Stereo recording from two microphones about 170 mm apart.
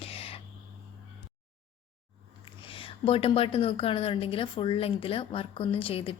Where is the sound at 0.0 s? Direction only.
35° left (ahead or behind).